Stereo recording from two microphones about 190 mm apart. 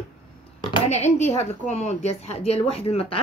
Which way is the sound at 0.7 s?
35° left (ahead or behind).